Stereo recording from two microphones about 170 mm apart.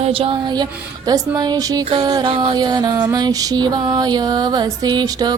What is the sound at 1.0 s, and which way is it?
Mantra, 20° right (ahead or behind).